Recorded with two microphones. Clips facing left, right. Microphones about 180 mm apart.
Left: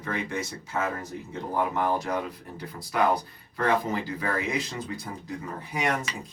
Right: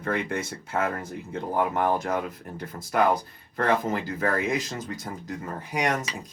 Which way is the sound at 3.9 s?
50° right (ahead or behind).